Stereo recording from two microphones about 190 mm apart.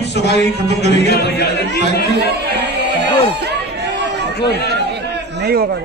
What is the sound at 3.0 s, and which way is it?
Chatter, 60° right (ahead or behind).